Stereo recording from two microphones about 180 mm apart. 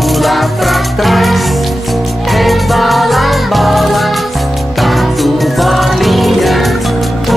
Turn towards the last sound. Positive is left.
turn(degrees=0)  # may be behind; listen again after turning